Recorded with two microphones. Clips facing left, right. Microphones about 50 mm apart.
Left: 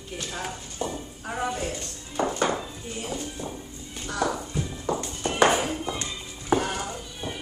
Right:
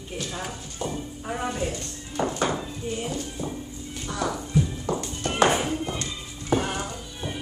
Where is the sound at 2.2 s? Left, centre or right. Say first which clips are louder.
Even; centre.